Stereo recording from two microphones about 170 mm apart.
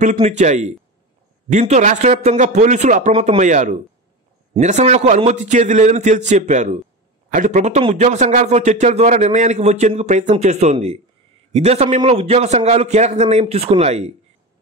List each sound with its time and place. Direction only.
0.0 s a man's voice: 45° right (ahead or behind)